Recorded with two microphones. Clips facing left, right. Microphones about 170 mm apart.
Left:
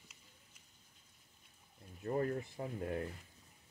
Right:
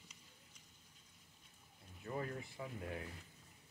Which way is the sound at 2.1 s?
45° left (ahead or behind).